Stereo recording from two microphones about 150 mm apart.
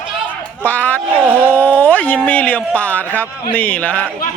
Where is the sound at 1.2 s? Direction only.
10° right (ahead or behind).